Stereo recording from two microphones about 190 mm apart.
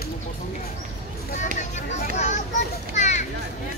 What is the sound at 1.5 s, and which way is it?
Children playing, 40° left (ahead or behind).